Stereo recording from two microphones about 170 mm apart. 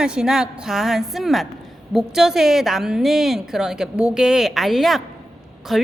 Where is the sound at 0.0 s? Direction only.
5° right (ahead or behind).